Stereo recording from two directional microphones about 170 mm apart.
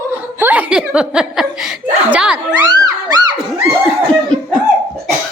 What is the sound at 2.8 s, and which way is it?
Music, 25° right (ahead or behind).